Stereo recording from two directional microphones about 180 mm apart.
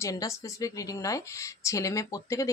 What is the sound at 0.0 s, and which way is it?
A woman's voice, 20° left (ahead or behind).